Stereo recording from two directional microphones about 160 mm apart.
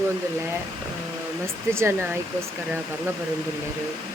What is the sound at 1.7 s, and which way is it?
Speech, 15° right (ahead or behind).